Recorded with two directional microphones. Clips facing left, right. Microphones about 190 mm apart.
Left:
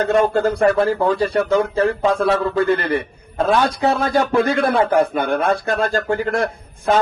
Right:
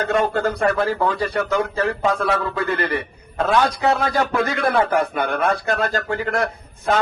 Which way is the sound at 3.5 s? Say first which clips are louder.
Left 1 dB; 50° left (ahead or behind).